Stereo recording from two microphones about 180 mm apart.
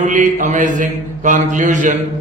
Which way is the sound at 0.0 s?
45° right (ahead or behind).